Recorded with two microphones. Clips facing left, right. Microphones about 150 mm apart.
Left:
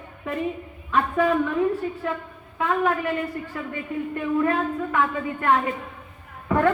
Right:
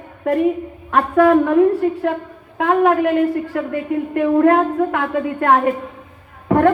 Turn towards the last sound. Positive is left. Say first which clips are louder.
# right 7 dB
turn(degrees=-60)  # may be behind; listen again after turning